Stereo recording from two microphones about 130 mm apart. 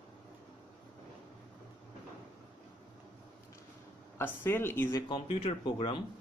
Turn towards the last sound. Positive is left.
turn(degrees=40)  # may be behind; listen again after turning